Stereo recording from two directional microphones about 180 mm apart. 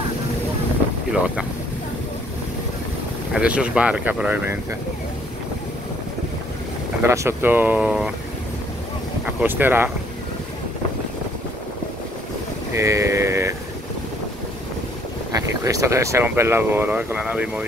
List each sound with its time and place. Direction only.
3.3 s speech: 5° right (ahead or behind)
7.0 s speech: 15° right (ahead or behind)
9.2 s speech: 10° right (ahead or behind)
12.7 s speech: 15° right (ahead or behind)
15.3 s speech: 20° right (ahead or behind)